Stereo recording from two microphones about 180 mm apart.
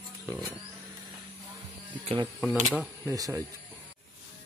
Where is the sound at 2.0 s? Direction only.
30° right (ahead or behind).